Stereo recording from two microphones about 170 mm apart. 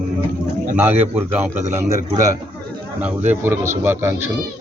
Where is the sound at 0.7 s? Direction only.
10° right (ahead or behind).